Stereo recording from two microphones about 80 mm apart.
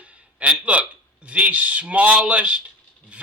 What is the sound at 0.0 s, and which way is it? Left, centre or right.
A man's voice, centre.